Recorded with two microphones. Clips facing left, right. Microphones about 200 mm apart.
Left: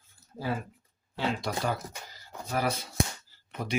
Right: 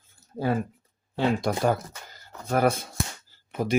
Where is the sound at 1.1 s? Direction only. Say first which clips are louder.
Right 6 dB; 55° right (ahead or behind).